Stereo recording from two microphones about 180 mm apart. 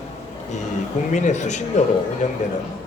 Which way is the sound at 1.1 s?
40° left (ahead or behind).